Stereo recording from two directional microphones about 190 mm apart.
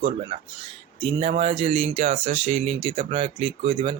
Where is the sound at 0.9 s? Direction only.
30° right (ahead or behind).